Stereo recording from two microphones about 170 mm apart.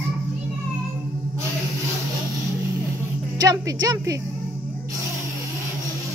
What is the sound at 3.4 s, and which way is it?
Speech, 20° right (ahead or behind).